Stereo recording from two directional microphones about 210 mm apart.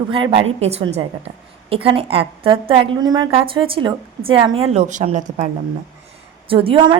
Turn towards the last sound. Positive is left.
turn(degrees=-25)  # may be behind; listen again after turning